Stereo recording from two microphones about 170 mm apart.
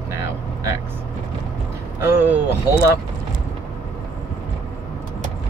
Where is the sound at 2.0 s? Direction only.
15° right (ahead or behind).